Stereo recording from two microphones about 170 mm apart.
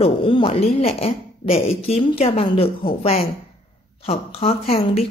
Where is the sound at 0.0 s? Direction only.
30° left (ahead or behind).